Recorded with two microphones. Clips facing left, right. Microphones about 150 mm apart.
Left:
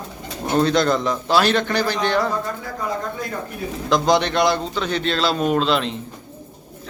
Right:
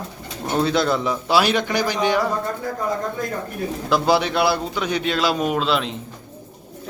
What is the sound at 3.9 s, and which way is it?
Speech, 5° right (ahead or behind).